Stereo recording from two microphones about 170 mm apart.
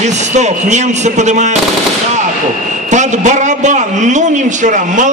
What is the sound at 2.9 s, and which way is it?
A man's voice, 45° right (ahead or behind).